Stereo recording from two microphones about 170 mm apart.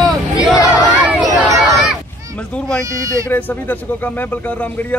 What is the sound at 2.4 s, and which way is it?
Speech, 5° left (ahead or behind).